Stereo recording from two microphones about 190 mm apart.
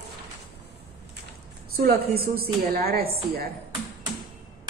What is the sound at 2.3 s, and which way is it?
A woman's voice, 55° right (ahead or behind).